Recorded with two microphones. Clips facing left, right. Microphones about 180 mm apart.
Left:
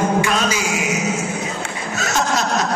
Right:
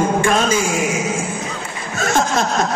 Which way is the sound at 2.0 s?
50° right (ahead or behind).